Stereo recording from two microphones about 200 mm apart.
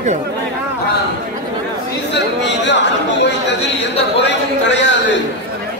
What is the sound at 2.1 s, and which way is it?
Chatter, 60° left (ahead or behind).